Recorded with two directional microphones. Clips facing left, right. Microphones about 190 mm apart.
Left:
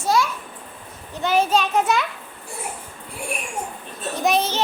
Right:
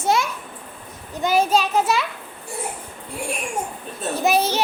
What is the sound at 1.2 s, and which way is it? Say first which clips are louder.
Speech: right 1 dB; 10° right (ahead or behind).